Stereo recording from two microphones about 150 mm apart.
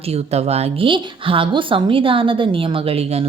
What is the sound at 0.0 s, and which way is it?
A woman's voice, 45° right (ahead or behind).